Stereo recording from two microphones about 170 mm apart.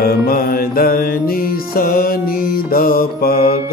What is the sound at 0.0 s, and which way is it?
Mantra, 60° left (ahead or behind).